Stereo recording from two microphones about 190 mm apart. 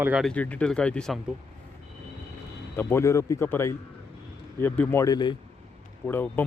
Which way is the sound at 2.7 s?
15° left (ahead or behind).